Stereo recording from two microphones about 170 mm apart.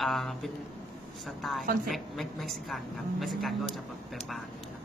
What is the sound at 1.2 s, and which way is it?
A woman's voice, centre (ahead or behind).